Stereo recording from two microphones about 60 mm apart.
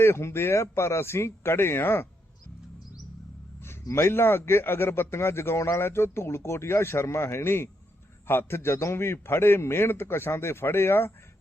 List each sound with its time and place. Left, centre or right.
0.0 s a man's voice: left
3.9 s a man's voice: left